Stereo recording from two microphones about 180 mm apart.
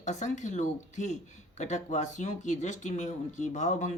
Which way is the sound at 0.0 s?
40° left (ahead or behind).